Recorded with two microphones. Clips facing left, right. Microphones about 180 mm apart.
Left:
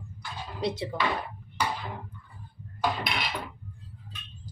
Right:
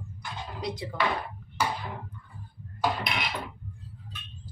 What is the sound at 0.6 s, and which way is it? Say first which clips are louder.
Speech: left 5 dB; 25° left (ahead or behind).